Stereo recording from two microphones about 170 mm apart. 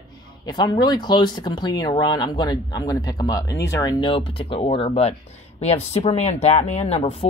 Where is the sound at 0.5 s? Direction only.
25° left (ahead or behind).